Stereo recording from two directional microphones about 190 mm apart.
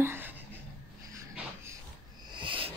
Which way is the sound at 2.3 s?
25° right (ahead or behind).